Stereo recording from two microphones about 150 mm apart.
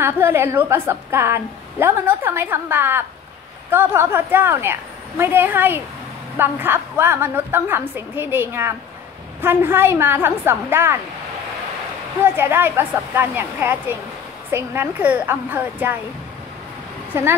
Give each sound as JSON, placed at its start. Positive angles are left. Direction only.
{"t": 0.0, "sound": "a woman's voice", "side_deg": -15}
{"t": 12.2, "sound": "a woman's voice", "side_deg": -15}
{"t": 17.1, "sound": "a woman's voice", "side_deg": -15}